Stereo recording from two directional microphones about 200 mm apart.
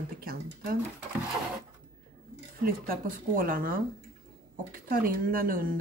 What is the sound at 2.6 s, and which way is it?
Speech, 45° right (ahead or behind).